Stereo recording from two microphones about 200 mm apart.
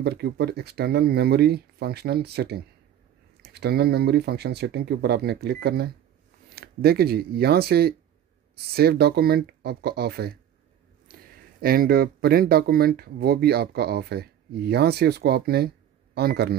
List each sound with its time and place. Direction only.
0.0 s speech: 55° right (ahead or behind)
11.6 s speech: 45° right (ahead or behind)